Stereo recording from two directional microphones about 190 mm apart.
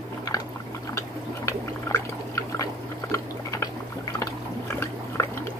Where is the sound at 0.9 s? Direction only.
15° left (ahead or behind).